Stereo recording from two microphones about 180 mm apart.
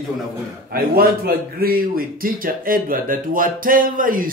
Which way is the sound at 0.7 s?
55° right (ahead or behind).